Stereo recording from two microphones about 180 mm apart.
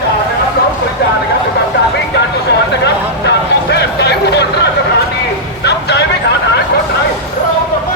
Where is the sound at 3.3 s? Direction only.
70° left (ahead or behind).